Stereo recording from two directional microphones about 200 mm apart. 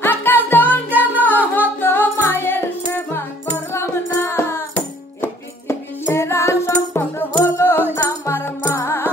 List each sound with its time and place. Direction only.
0.0 s music: 10° left (ahead or behind)
0.7 s music: 10° right (ahead or behind)
1.8 s music: 10° left (ahead or behind)